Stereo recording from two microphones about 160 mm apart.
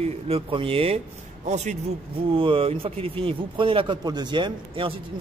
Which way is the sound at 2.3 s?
35° right (ahead or behind).